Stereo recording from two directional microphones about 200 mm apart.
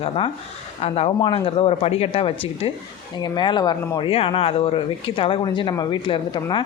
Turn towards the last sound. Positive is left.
turn(degrees=25)  # may be behind; listen again after turning